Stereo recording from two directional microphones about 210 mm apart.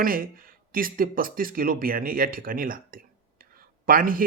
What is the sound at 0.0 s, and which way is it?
Speech, 45° right (ahead or behind).